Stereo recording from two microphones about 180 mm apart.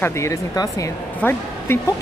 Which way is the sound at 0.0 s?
15° left (ahead or behind).